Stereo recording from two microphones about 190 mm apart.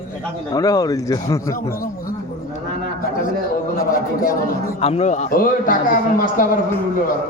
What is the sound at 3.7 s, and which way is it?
A man's voice, 50° left (ahead or behind).